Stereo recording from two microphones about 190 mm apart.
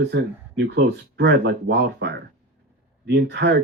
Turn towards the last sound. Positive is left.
turn(degrees=-65)  # may be behind; listen again after turning